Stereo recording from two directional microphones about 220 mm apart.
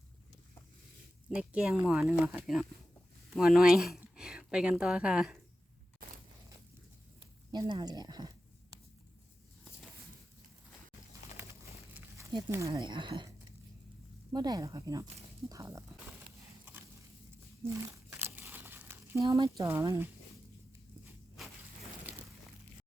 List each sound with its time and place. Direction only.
1.4 s a woman's voice: 5° right (ahead or behind)
7.5 s speech: 20° right (ahead or behind)
12.3 s speech: 15° right (ahead or behind)
14.3 s speech: 20° right (ahead or behind)
17.6 s speech: 10° right (ahead or behind)
18.1 s crumpling: 10° right (ahead or behind)